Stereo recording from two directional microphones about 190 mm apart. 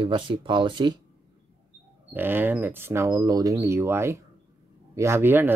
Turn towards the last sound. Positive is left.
turn(degrees=-10)  # may be behind; listen again after turning